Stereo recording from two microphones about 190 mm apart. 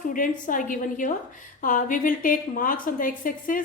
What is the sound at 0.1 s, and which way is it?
A woman's voice, 45° left (ahead or behind).